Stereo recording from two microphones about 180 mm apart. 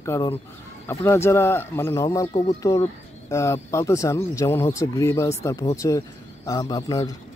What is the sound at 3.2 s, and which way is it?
Speech, 15° left (ahead or behind).